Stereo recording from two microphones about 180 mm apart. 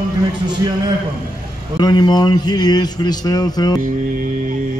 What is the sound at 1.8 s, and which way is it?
A man's voice, 25° left (ahead or behind).